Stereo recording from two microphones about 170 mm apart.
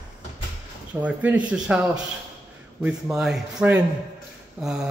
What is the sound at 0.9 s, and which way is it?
Speech, 10° right (ahead or behind).